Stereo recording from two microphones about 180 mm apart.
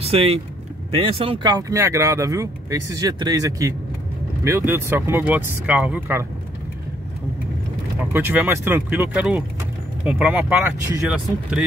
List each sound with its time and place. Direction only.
0.0 s speech: 35° right (ahead or behind); by 6.2 s 10° right (ahead or behind)
8.0 s speech: 10° right (ahead or behind)